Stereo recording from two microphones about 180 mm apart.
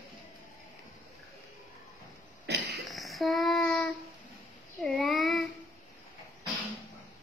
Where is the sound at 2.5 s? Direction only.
65° right (ahead or behind).